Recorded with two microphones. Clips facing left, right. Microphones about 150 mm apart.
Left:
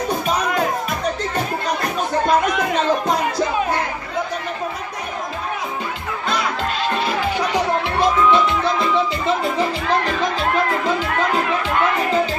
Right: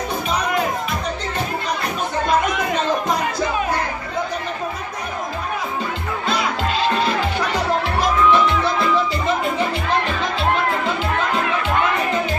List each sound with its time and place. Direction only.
8.3 s music: 25° left (ahead or behind)